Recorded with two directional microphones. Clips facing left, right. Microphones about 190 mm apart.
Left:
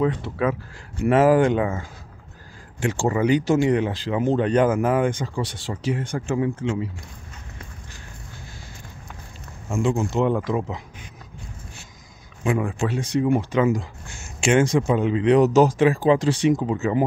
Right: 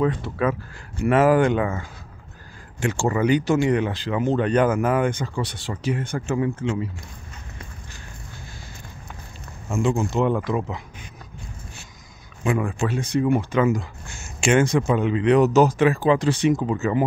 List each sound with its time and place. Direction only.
0.0 s speech: 20° left (ahead or behind)
1.0 s speech: 30° left (ahead or behind)
9.7 s speech: 30° left (ahead or behind)
12.4 s speech: 20° left (ahead or behind)
14.4 s speech: 25° left (ahead or behind)
16.4 s speech: 20° left (ahead or behind)